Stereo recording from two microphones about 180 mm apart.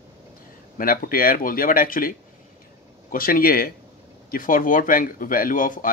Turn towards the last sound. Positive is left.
turn(degrees=50)  # may be behind; listen again after turning